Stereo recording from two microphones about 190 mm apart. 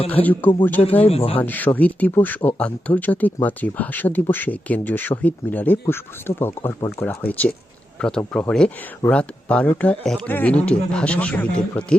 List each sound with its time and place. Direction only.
0.1 s speech: 10° left (ahead or behind)
1.0 s speech: 30° left (ahead or behind)
1.4 s speech: 10° left (ahead or behind)